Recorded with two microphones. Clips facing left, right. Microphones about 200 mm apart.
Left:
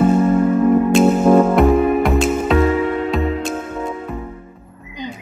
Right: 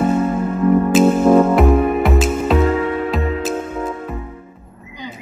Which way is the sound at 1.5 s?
Centre (ahead or behind).